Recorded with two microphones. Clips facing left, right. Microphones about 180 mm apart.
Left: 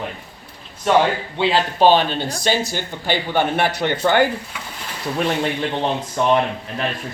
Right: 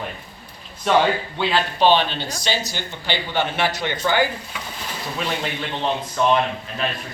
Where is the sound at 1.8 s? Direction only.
45° left (ahead or behind).